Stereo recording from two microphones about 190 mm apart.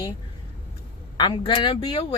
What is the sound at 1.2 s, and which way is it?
Speech, 25° left (ahead or behind).